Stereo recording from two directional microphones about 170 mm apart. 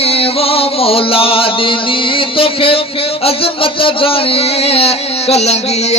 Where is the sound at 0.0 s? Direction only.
35° left (ahead or behind).